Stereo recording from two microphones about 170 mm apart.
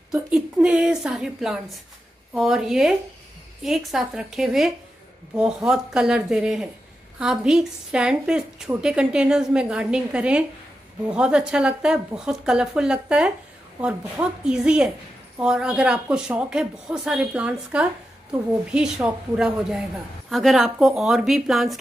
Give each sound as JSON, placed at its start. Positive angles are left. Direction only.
{"t": 0.1, "sound": "a woman's voice", "side_deg": -5}